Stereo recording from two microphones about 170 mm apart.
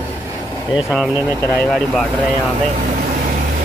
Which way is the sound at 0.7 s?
5° right (ahead or behind).